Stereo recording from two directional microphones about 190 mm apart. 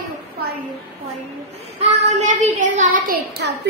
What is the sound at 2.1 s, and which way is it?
Speech, 40° right (ahead or behind).